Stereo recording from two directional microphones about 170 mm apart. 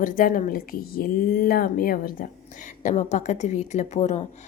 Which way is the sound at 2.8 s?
45° left (ahead or behind).